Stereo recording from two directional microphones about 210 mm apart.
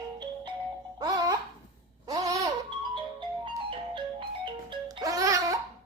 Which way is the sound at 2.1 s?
15° right (ahead or behind).